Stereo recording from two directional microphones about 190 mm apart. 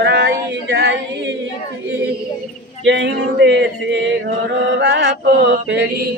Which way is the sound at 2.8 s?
70° right (ahead or behind).